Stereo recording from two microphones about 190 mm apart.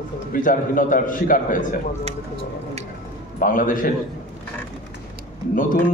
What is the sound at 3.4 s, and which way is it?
Speech, 45° left (ahead or behind).